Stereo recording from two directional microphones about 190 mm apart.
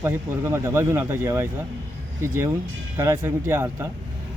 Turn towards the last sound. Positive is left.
turn(degrees=-15)  # may be behind; listen again after turning